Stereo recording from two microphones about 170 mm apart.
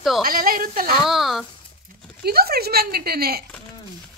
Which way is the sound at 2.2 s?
65° right (ahead or behind).